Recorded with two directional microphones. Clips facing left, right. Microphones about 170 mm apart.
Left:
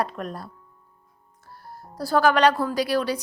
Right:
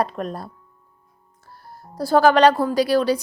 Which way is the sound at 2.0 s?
25° right (ahead or behind).